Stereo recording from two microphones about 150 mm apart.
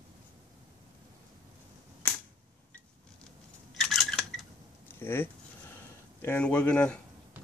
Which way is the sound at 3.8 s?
5° left (ahead or behind).